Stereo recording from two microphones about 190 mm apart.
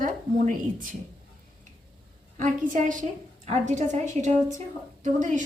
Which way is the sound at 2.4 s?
40° right (ahead or behind).